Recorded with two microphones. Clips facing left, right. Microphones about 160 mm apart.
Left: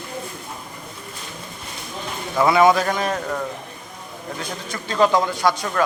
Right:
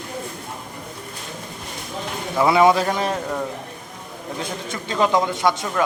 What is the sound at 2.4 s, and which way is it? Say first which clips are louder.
Speech: even; 25° right (ahead or behind).